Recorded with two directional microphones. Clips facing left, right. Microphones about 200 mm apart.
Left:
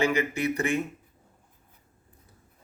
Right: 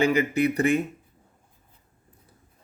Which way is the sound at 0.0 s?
35° right (ahead or behind).